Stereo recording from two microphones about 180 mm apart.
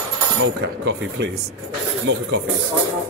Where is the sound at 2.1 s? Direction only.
90° right.